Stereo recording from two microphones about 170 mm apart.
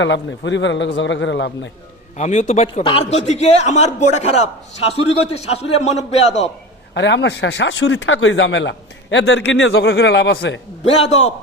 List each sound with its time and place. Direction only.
0.0 s speech: 90° left
2.1 s a man's voice: 45° left (ahead or behind)
6.9 s speech: 90° left
10.8 s a man's voice: 35° left (ahead or behind)